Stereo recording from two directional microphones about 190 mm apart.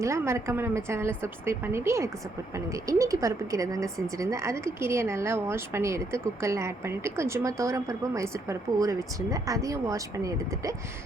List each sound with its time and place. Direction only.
0.0 s speech: 15° right (ahead or behind)